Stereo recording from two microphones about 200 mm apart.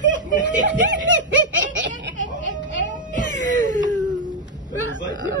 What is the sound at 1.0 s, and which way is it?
Snicker, 40° right (ahead or behind).